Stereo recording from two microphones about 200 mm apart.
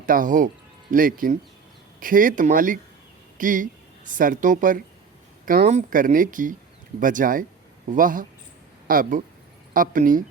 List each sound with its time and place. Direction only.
0.0 s a woman's voice: 45° right (ahead or behind)